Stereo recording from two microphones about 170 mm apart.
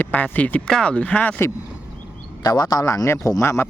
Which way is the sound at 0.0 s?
10° left (ahead or behind).